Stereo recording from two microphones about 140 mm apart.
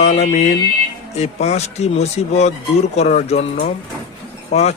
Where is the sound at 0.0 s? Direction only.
55° left (ahead or behind).